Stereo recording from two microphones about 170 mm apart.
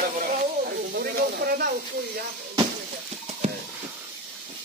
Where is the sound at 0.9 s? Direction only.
65° right (ahead or behind).